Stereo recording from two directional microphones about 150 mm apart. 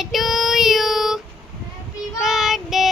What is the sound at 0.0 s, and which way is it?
Child singing, centre (ahead or behind).